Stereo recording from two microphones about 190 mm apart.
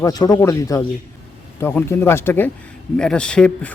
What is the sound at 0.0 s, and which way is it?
Speech, 20° left (ahead or behind).